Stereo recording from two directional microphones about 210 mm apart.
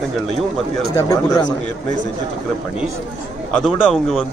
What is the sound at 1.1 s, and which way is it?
Speech, 20° left (ahead or behind).